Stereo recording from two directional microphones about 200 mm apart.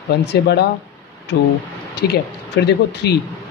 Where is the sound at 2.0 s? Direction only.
55° left (ahead or behind).